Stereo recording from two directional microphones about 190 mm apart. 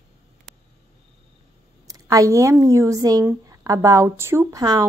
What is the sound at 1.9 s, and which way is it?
A woman's voice, 20° right (ahead or behind).